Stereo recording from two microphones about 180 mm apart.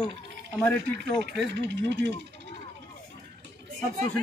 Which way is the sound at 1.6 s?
75° right (ahead or behind).